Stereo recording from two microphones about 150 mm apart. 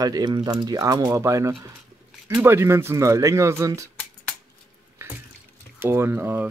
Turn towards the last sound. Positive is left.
turn(degrees=-15)  # may be behind; listen again after turning